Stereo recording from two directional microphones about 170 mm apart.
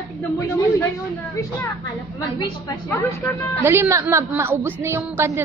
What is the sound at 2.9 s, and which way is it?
Speech, 15° left (ahead or behind).